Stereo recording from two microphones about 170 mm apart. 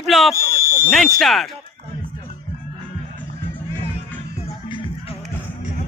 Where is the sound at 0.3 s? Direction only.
60° right (ahead or behind).